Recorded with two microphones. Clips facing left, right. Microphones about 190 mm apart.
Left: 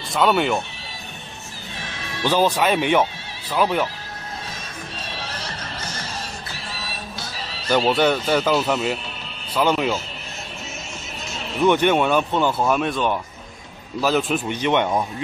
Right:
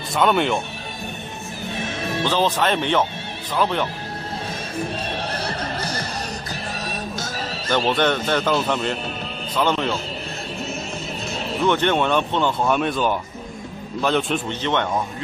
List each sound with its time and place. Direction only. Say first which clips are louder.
0.1 s speech: even; centre (ahead or behind)
2.2 s speech: left 3 dB; 10° left (ahead or behind)
5.1 s neigh: right 6 dB; 60° right (ahead or behind)
5.8 s music: right 5 dB; 35° right (ahead or behind)
7.7 s speech: left 2 dB; 10° left (ahead or behind)
11.6 s speech: left 3 dB; 10° left (ahead or behind)